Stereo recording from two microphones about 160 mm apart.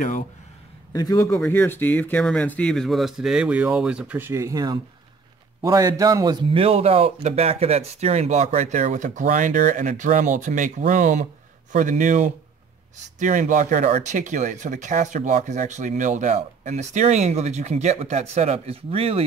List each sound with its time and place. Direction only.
0.9 s a man's voice: 20° left (ahead or behind); by 6.3 s 20° right (ahead or behind)
6.5 s speech: 40° right (ahead or behind)